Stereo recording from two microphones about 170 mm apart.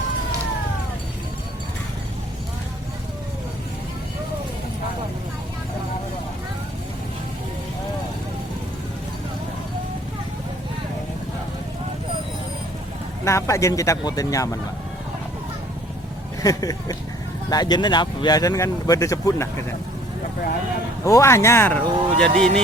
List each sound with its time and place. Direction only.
13.2 s speech: 15° left (ahead or behind)
16.4 s speech: 20° left (ahead or behind)
21.0 s speech: 15° left (ahead or behind)